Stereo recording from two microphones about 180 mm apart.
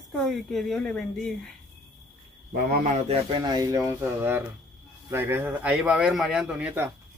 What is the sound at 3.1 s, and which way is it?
A man's voice, 25° right (ahead or behind).